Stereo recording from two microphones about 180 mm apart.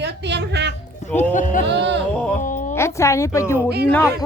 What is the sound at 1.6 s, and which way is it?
Music, 75° right (ahead or behind).